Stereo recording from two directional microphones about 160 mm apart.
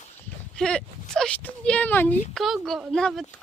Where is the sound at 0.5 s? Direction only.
5° left (ahead or behind).